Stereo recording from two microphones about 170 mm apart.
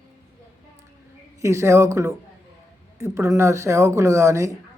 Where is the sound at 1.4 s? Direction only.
15° right (ahead or behind).